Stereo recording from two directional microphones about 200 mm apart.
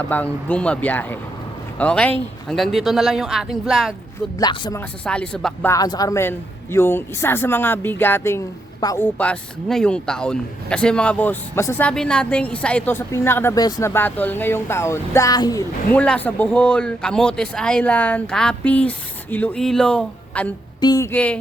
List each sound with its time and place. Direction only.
0.1 s speech: 10° left (ahead or behind)
4.4 s speech: 20° left (ahead or behind)
4.8 s speech: 5° left (ahead or behind)
5.7 s speech: 20° left (ahead or behind)
20.8 s speech: 15° left (ahead or behind)